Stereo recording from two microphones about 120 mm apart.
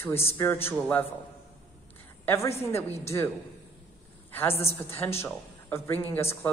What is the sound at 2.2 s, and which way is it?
Speech, 25° left (ahead or behind).